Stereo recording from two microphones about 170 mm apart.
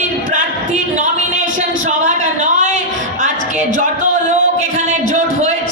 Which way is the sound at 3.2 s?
45° right (ahead or behind).